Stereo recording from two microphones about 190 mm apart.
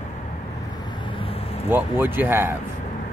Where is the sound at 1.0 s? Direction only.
30° left (ahead or behind).